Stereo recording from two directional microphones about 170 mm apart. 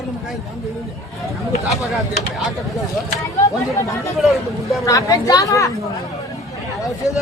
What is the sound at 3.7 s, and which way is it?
Speech, 20° left (ahead or behind).